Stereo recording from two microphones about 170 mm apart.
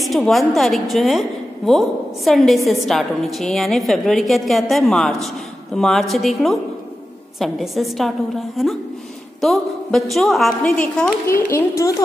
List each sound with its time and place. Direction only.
0.0 s a woman's voice: centre (ahead or behind); by 12.0 s 15° left (ahead or behind)